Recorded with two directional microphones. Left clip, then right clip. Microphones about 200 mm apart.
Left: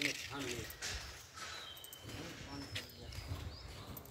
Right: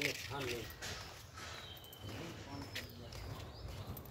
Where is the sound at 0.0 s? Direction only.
10° right (ahead or behind).